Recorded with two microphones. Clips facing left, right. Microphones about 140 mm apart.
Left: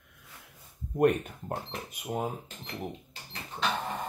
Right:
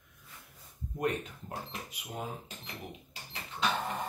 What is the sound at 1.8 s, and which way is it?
Speech, 45° left (ahead or behind).